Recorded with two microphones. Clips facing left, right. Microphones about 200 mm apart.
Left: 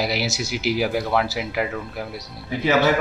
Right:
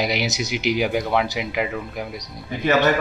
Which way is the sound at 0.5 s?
5° left (ahead or behind).